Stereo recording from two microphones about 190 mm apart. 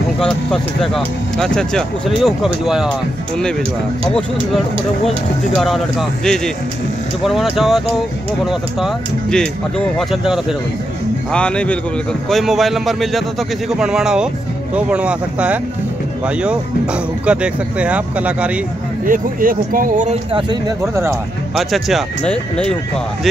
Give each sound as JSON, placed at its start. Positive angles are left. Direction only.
{"t": 0.2, "sound": "speech", "side_deg": 5}
{"t": 5.6, "sound": "speech", "side_deg": 0}
{"t": 17.3, "sound": "speech", "side_deg": -5}
{"t": 19.0, "sound": "speech", "side_deg": -45}
{"t": 20.3, "sound": "speech", "side_deg": -20}
{"t": 21.5, "sound": "speech", "side_deg": 0}